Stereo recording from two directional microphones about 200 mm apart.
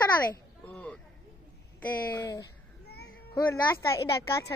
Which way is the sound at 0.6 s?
10° left (ahead or behind).